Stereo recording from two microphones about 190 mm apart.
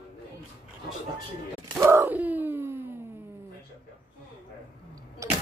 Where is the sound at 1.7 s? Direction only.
15° right (ahead or behind).